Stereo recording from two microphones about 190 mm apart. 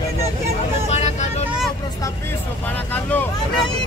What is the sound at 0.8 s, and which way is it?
Vehicle, 35° left (ahead or behind).